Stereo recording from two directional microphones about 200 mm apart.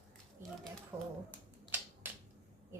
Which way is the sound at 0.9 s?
15° right (ahead or behind).